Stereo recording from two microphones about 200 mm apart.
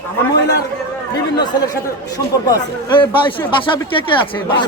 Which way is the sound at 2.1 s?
20° left (ahead or behind).